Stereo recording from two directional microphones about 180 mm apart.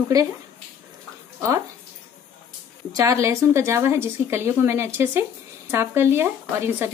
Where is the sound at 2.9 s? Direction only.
15° right (ahead or behind).